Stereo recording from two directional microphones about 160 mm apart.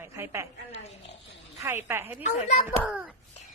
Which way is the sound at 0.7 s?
40° left (ahead or behind).